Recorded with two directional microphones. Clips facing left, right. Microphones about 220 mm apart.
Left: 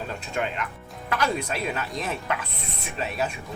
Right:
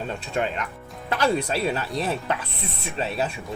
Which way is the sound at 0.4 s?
35° right (ahead or behind).